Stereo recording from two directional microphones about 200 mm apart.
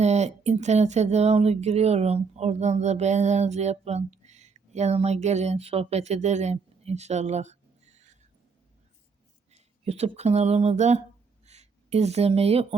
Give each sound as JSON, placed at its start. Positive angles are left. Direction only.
{"t": 0.0, "sound": "speech", "side_deg": -35}
{"t": 9.5, "sound": "speech", "side_deg": -30}
{"t": 11.4, "sound": "a sound", "side_deg": -35}